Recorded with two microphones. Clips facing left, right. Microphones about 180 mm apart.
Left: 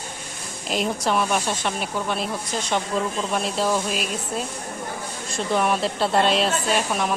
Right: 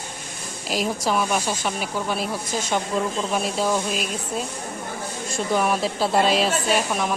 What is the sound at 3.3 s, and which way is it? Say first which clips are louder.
Speech: left 1 dB; centre (ahead or behind).